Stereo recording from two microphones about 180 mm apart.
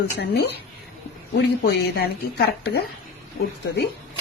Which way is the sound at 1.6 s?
60° left (ahead or behind).